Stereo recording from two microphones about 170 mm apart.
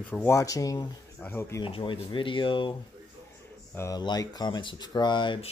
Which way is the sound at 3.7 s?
20° left (ahead or behind).